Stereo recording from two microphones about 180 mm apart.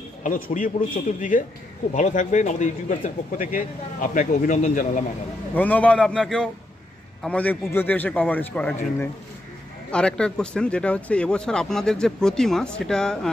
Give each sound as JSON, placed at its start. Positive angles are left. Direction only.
{"t": 0.2, "sound": "a man's voice", "side_deg": 50}
{"t": 5.5, "sound": "a man's voice", "side_deg": 10}